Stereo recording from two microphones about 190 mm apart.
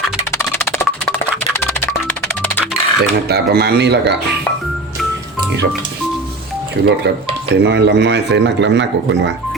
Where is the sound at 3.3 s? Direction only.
60° right (ahead or behind).